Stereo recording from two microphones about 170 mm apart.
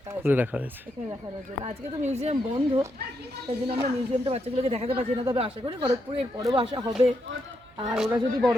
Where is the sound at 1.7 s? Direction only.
40° right (ahead or behind); by 6.9 s 25° right (ahead or behind).